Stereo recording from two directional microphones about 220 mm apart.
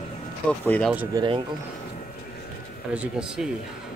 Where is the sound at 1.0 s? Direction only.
20° right (ahead or behind).